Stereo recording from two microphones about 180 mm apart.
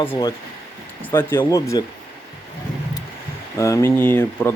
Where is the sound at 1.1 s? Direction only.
10° left (ahead or behind).